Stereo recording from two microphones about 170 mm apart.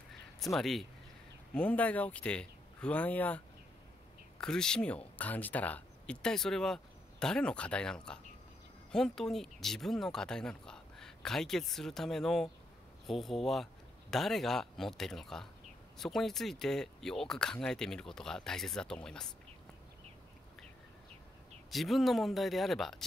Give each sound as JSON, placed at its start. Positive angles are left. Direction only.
{"t": 0.6, "sound": "speech", "side_deg": 0}
{"t": 21.6, "sound": "speech", "side_deg": 0}